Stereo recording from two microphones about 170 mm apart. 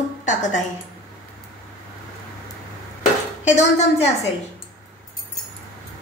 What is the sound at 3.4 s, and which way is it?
Speech, 40° left (ahead or behind).